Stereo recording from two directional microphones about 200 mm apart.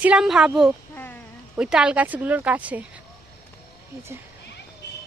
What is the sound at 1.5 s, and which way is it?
Speech, 5° right (ahead or behind).